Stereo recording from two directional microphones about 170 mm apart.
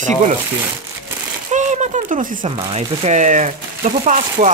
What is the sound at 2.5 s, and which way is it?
Speech, 35° right (ahead or behind).